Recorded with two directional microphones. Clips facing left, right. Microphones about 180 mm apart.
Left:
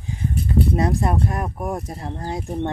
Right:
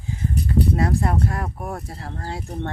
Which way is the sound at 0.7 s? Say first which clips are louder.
Left 1 dB; 20° left (ahead or behind).